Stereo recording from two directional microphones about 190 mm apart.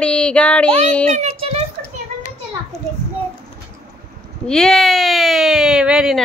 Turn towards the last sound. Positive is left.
turn(degrees=-5)  # may be behind; listen again after turning